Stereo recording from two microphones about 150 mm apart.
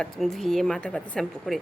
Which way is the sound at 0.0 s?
5° left (ahead or behind).